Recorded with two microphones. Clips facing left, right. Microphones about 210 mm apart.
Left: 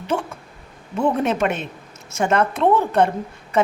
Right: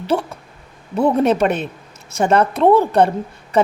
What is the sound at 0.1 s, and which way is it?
A woman's voice, 35° right (ahead or behind).